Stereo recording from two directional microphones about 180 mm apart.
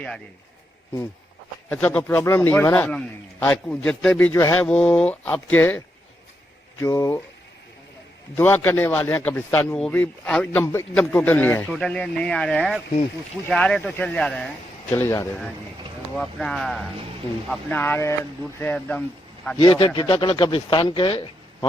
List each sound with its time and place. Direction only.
1.7 s a man's voice: 10° left (ahead or behind)
8.4 s a man's voice: 10° left (ahead or behind)
16.1 s a man's voice: centre (ahead or behind)
19.5 s speech: 30° left (ahead or behind)